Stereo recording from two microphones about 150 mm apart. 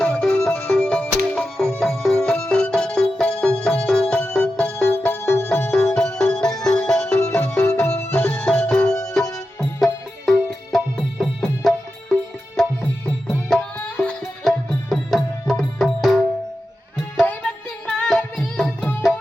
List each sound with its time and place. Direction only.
0.0 s music: 10° left (ahead or behind)
17.8 s music: 5° left (ahead or behind)